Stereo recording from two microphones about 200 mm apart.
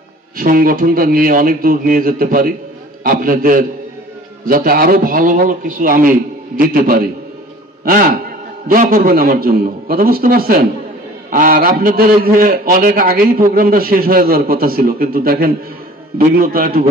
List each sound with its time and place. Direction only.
0.4 s a man's voice: 45° right (ahead or behind)